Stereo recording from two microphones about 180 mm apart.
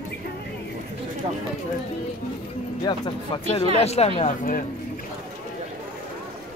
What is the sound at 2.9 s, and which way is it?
Speech, 25° left (ahead or behind).